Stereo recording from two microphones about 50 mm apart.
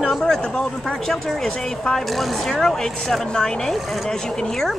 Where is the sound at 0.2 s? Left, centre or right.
Centre.